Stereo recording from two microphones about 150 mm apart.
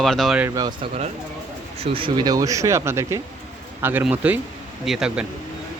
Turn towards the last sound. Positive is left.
turn(degrees=-5)  # may be behind; listen again after turning